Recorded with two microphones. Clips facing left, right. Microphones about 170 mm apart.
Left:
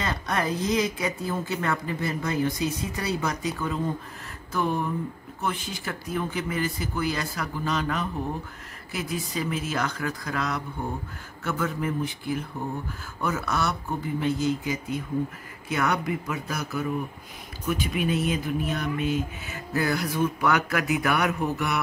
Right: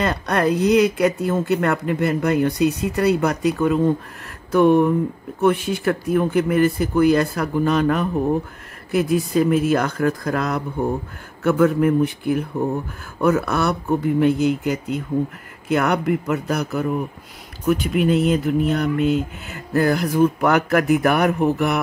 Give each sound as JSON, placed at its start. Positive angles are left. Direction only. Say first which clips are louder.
{"t": 0.0, "sound": "speech", "louder": "right 8 dB", "side_deg": -65}
{"t": 4.5, "sound": "music", "louder": "right 13 dB", "side_deg": -65}
{"t": 5.4, "sound": "speech", "louder": "right 13 dB", "side_deg": -60}
{"t": 18.3, "sound": "music", "louder": "right 9 dB", "side_deg": -65}
{"t": 19.7, "sound": "speech", "louder": "right 8 dB", "side_deg": -55}